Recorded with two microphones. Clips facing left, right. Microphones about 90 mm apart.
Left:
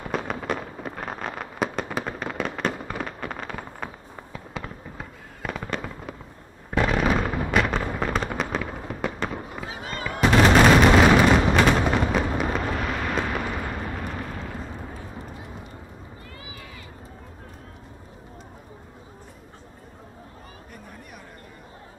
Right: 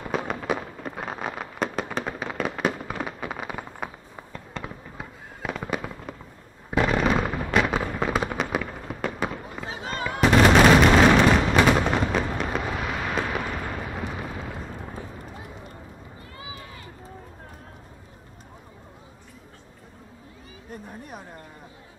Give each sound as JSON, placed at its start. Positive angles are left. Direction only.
{"t": 0.0, "sound": "fireworks", "side_deg": 0}
{"t": 9.7, "sound": "fireworks", "side_deg": -30}
{"t": 10.2, "sound": "gunshot", "side_deg": 0}
{"t": 11.8, "sound": "fireworks", "side_deg": 5}